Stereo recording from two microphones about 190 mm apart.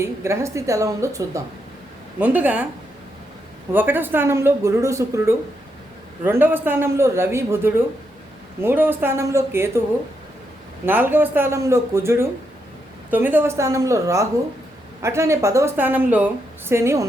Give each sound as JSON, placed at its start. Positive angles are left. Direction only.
{"t": 0.0, "sound": "a woman's voice", "side_deg": -15}
{"t": 3.7, "sound": "a woman's voice", "side_deg": -10}
{"t": 10.8, "sound": "a woman's voice", "side_deg": -10}